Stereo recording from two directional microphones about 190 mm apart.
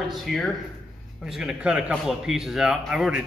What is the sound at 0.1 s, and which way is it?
A man's voice, centre (ahead or behind).